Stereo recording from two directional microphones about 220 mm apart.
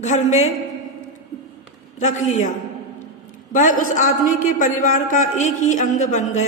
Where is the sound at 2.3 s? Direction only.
35° left (ahead or behind).